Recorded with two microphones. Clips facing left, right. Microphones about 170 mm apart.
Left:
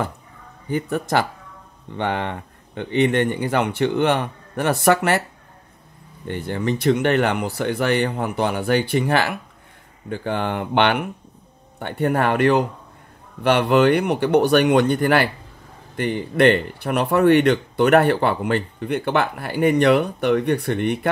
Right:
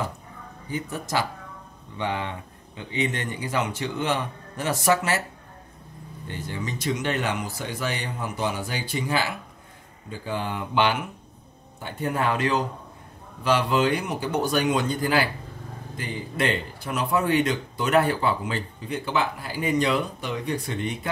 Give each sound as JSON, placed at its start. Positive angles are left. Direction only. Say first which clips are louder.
{"t": 0.7, "sound": "speech", "louder": "left 8 dB", "side_deg": 60}
{"t": 6.2, "sound": "speech", "louder": "left 9 dB", "side_deg": 60}